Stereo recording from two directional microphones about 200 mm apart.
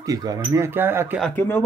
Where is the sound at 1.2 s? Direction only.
10° left (ahead or behind).